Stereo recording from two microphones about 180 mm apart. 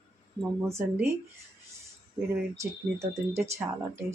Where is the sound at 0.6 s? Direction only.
15° right (ahead or behind).